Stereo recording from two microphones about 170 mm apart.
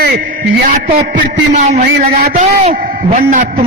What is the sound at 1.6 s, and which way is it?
Speech, 45° right (ahead or behind).